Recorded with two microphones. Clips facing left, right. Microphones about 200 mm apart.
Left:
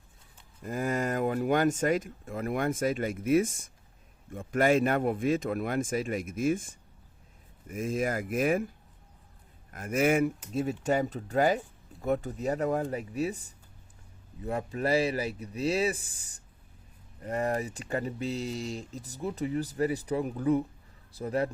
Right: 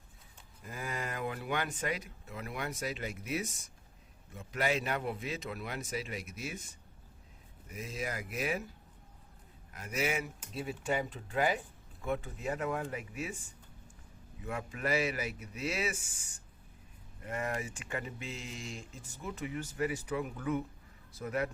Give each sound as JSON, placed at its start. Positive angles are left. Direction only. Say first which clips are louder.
{"t": 0.6, "sound": "speech", "louder": "left 10 dB", "side_deg": 45}
{"t": 9.7, "sound": "speech", "louder": "left 9 dB", "side_deg": 50}